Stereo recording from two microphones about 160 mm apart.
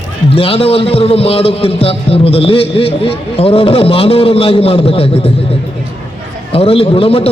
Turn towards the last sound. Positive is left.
turn(degrees=35)  # may be behind; listen again after turning